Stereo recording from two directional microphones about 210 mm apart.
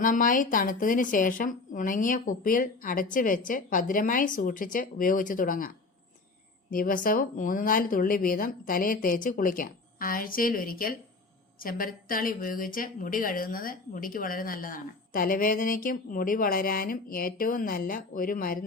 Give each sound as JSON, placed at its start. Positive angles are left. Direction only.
{"t": 0.0, "sound": "a woman's voice", "side_deg": 40}